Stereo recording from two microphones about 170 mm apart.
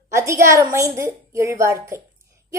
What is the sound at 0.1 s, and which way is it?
A woman's voice, 15° right (ahead or behind).